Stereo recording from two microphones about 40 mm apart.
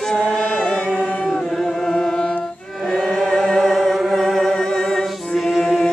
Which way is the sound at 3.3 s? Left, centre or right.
Centre.